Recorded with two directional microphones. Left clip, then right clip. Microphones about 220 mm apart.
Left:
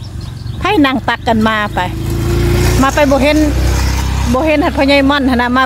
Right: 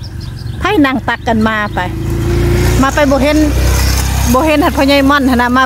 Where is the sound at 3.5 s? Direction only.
30° right (ahead or behind); by 4.4 s 50° right (ahead or behind).